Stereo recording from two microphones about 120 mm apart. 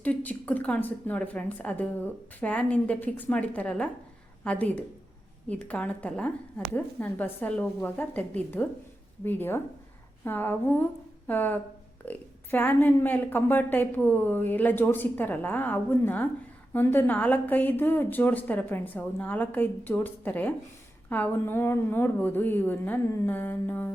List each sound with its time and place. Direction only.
0.0 s a woman's voice: 10° left (ahead or behind)